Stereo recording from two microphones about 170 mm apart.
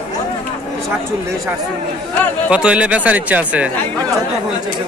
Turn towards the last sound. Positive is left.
turn(degrees=-10)  # may be behind; listen again after turning